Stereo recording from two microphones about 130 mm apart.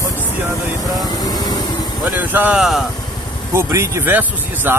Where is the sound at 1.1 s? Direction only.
30° left (ahead or behind).